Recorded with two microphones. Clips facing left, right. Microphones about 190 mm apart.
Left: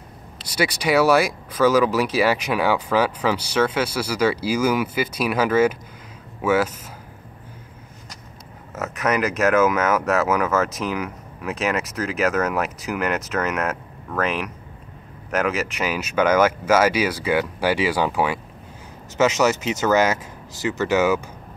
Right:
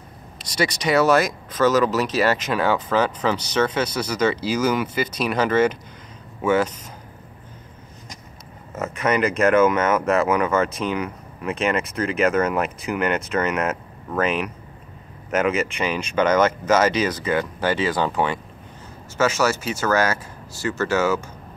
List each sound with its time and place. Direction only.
0.5 s speech: 5° left (ahead or behind)
8.7 s speech: centre (ahead or behind)
19.1 s speech: 20° left (ahead or behind)